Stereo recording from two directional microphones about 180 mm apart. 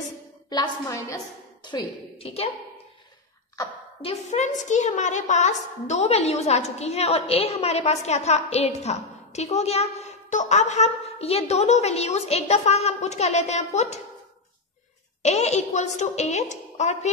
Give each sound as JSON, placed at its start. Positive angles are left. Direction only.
{"t": 0.5, "sound": "a woman's voice", "side_deg": 20}
{"t": 4.0, "sound": "a woman's voice", "side_deg": 35}
{"t": 15.2, "sound": "a woman's voice", "side_deg": 40}